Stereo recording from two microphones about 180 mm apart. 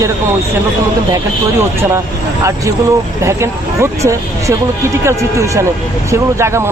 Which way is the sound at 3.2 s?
15° right (ahead or behind).